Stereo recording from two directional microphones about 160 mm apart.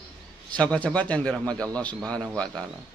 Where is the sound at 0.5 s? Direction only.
10° left (ahead or behind).